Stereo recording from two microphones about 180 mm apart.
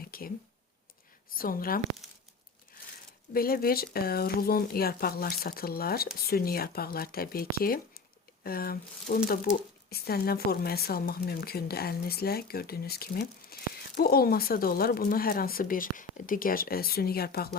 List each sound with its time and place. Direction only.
0.1 s a sound: 55° left (ahead or behind)
1.4 s speech: 55° left (ahead or behind)
3.3 s a woman's voice: 55° left (ahead or behind)